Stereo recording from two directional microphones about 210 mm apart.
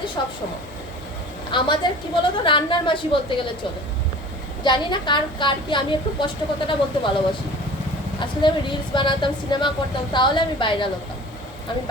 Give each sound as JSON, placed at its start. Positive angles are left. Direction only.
{"t": 0.2, "sound": "a woman's voice", "side_deg": 20}
{"t": 1.5, "sound": "a woman's voice", "side_deg": 20}
{"t": 4.6, "sound": "a woman's voice", "side_deg": 20}
{"t": 8.2, "sound": "a woman's voice", "side_deg": 20}